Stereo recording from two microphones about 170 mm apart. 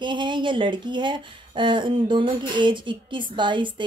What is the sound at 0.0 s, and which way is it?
Speech, 30° right (ahead or behind).